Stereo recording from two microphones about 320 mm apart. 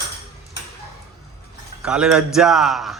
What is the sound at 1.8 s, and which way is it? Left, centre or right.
A man's voice, centre.